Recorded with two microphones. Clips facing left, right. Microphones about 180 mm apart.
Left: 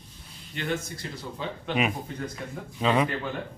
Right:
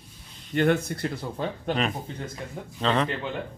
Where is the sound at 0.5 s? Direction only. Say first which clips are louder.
Right 9 dB; 60° right (ahead or behind).